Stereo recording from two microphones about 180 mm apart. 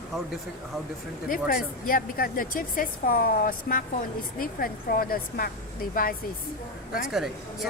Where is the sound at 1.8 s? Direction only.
50° left (ahead or behind).